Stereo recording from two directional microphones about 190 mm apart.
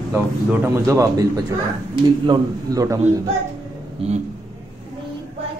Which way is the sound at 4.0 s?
30° right (ahead or behind).